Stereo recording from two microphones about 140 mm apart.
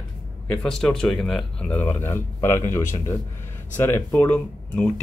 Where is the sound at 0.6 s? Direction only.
5° left (ahead or behind).